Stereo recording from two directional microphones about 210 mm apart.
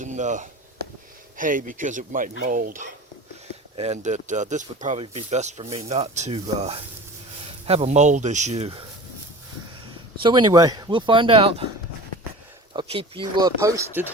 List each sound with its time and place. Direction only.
0.0 s a sound: 35° right (ahead or behind)
1.4 s speech: 40° right (ahead or behind)
10.2 s speech: 20° right (ahead or behind)
12.7 s speech: 25° right (ahead or behind)